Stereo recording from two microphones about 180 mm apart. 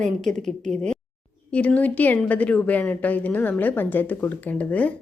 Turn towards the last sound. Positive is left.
turn(degrees=10)  # may be behind; listen again after turning